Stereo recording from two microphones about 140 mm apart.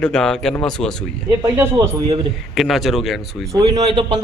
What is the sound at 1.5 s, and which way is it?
Speech, 15° right (ahead or behind).